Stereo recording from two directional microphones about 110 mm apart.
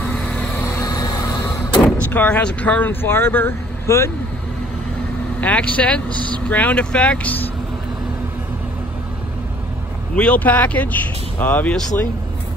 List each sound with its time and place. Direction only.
0.0 s vehicle: 10° left (ahead or behind)
0.7 s vehicle: 35° left (ahead or behind)
1.8 s vehicle: 5° left (ahead or behind)
2.1 s speech: 15° left (ahead or behind)
5.4 s speech: 15° left (ahead or behind)
10.1 s speech: 10° left (ahead or behind)